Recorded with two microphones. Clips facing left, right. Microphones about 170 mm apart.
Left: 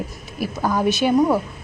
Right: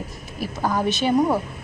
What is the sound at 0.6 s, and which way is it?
Speech, 10° right (ahead or behind).